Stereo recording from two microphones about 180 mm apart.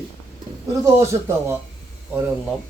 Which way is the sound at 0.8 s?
15° right (ahead or behind).